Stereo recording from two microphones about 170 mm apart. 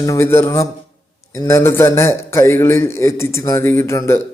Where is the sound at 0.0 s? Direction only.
15° left (ahead or behind).